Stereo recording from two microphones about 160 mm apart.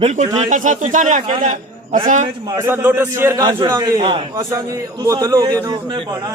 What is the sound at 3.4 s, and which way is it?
Speech, 25° right (ahead or behind).